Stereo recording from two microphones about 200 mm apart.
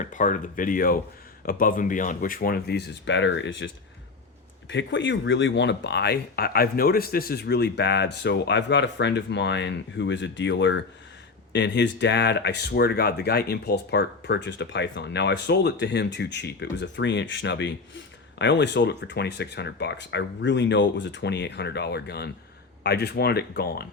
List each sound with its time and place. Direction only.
0.0 s speech: 40° left (ahead or behind); by 3.7 s 65° left (ahead or behind)
4.7 s speech: 65° left (ahead or behind)